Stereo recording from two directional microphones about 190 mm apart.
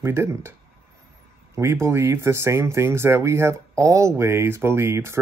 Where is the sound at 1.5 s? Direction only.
15° right (ahead or behind).